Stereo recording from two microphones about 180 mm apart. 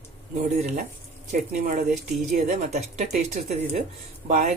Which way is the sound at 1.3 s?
45° right (ahead or behind).